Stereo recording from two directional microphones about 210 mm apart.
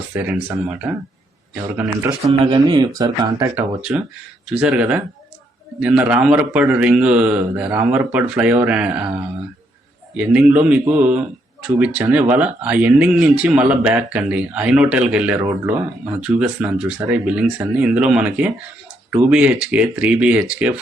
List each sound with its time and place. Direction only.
0.1 s speech: 10° right (ahead or behind)
2.2 s speech: 25° right (ahead or behind); by 9.1 s 5° right (ahead or behind)
10.2 s speech: 5° right (ahead or behind)